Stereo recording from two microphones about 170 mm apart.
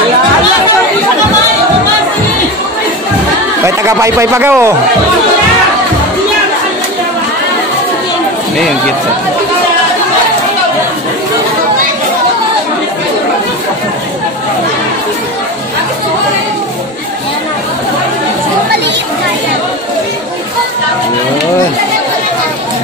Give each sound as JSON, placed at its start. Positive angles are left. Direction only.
{"t": 3.6, "sound": "speech", "side_deg": -15}